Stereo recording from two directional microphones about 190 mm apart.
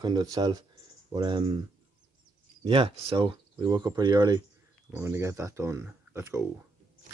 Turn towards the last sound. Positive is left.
turn(degrees=-15)  # may be behind; listen again after turning